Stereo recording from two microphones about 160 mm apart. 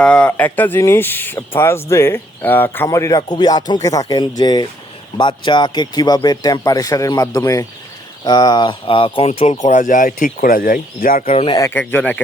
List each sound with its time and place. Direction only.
0.0 s speech: 5° left (ahead or behind); by 11.2 s 60° left (ahead or behind)
11.3 s speech: 40° left (ahead or behind)
11.5 s speech: 15° left (ahead or behind)